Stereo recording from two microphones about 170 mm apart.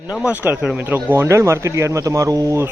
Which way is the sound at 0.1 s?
5° right (ahead or behind).